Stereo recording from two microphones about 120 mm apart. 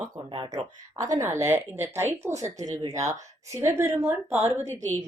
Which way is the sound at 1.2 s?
20° right (ahead or behind).